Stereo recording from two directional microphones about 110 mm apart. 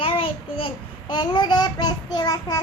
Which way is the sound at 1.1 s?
45° left (ahead or behind).